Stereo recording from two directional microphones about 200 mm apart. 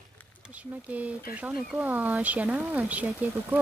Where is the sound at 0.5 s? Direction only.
5° right (ahead or behind).